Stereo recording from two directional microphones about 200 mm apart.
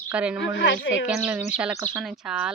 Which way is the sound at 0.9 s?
5° right (ahead or behind).